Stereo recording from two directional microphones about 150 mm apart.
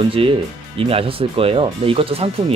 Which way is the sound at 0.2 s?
35° right (ahead or behind).